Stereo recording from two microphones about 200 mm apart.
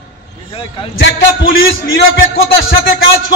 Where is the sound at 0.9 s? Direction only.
65° left (ahead or behind).